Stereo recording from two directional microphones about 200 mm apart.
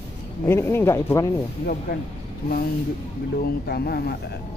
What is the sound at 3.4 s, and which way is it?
Speech, 50° left (ahead or behind).